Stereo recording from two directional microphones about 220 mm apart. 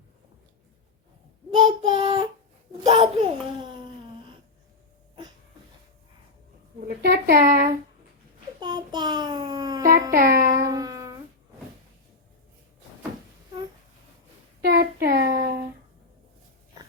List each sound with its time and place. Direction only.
1.6 s a child's voice: 25° right (ahead or behind)
7.0 s speech: 45° right (ahead or behind)
8.6 s child singing: 20° right (ahead or behind)
10.2 s a sound: 40° right (ahead or behind)
10.6 s music: 15° right (ahead or behind)
14.6 s child singing: 45° right (ahead or behind)